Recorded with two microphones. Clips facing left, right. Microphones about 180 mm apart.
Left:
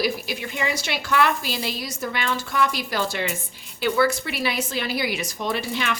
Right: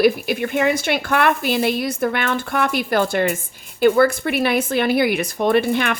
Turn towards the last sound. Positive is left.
turn(degrees=-55)  # may be behind; listen again after turning